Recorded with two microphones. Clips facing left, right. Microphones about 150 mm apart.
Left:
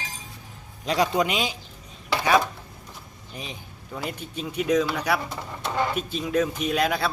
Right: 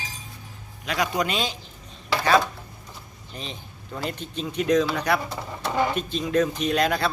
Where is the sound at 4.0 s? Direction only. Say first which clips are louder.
Right 2 dB; 10° left (ahead or behind).